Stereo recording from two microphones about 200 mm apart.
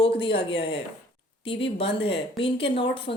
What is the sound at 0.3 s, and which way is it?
A woman's voice, 25° left (ahead or behind).